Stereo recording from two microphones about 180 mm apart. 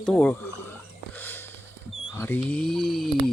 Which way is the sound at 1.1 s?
10° left (ahead or behind).